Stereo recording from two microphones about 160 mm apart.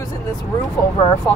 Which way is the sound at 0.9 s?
20° left (ahead or behind).